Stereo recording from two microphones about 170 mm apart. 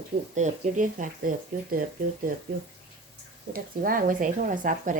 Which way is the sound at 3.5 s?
55° right (ahead or behind).